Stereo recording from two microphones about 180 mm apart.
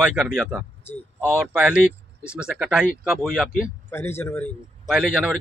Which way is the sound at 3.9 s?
10° left (ahead or behind).